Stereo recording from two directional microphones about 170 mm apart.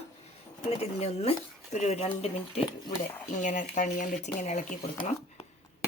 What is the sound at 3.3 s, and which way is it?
Speech, 50° left (ahead or behind).